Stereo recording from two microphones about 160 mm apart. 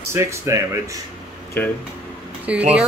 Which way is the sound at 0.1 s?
15° right (ahead or behind).